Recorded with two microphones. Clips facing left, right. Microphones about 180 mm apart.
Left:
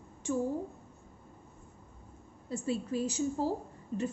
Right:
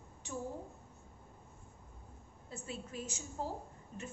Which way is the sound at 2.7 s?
35° left (ahead or behind).